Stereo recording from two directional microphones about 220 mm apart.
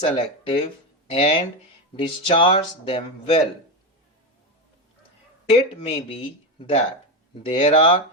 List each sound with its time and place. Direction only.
0.0 s speech: 25° left (ahead or behind)
5.5 s speech: 30° left (ahead or behind)
7.4 s speech: 25° left (ahead or behind)